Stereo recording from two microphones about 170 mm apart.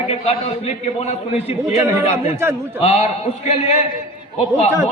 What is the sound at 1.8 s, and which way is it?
Speech, 15° right (ahead or behind).